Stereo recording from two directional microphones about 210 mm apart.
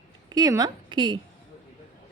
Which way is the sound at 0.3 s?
15° right (ahead or behind).